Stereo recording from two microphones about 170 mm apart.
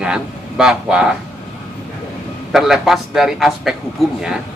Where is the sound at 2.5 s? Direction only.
Centre (ahead or behind).